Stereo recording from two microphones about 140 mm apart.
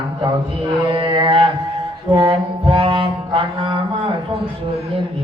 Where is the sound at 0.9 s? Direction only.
35° right (ahead or behind).